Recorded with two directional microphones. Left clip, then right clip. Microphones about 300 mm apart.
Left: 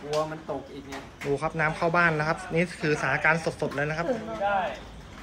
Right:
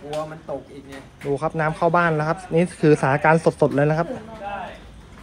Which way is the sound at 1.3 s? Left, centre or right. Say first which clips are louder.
Right 4 dB; centre.